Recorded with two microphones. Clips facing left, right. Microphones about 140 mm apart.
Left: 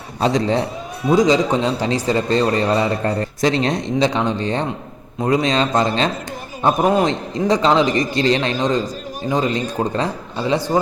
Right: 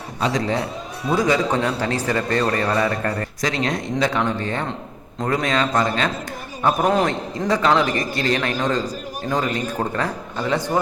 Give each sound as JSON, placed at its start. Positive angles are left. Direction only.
{"t": 0.2, "sound": "a man's voice", "side_deg": 30}
{"t": 1.0, "sound": "a man's voice", "side_deg": 15}
{"t": 6.7, "sound": "a man's voice", "side_deg": 5}
{"t": 7.0, "sound": "a man's voice", "side_deg": 20}